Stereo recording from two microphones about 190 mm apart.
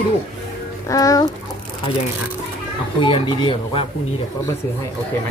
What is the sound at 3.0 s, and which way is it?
Speech, 25° left (ahead or behind).